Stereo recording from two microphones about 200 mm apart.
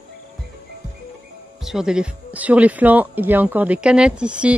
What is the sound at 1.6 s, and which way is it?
Speech, centre (ahead or behind).